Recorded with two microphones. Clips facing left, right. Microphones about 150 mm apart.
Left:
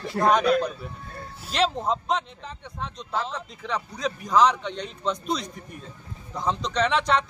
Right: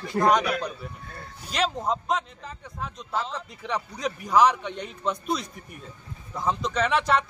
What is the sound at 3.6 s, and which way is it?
A man's voice, 15° right (ahead or behind).